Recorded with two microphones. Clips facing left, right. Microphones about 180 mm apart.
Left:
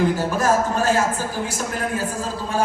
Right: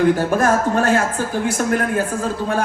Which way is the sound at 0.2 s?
60° right (ahead or behind).